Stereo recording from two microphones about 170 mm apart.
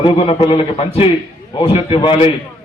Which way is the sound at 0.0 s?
35° left (ahead or behind).